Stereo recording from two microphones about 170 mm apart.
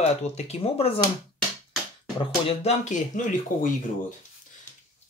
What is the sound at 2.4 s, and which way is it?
Speech, 40° left (ahead or behind).